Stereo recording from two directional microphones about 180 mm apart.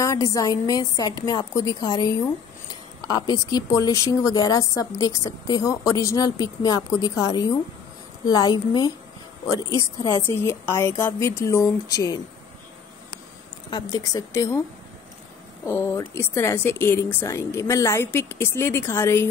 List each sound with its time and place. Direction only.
0.0 s a woman's voice: 20° left (ahead or behind)
13.7 s speech: 25° left (ahead or behind)
15.6 s speech: 15° left (ahead or behind)